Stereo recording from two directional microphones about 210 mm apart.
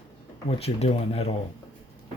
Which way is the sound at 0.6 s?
30° left (ahead or behind).